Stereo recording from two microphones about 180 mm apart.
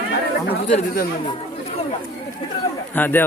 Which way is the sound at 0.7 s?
50° left (ahead or behind).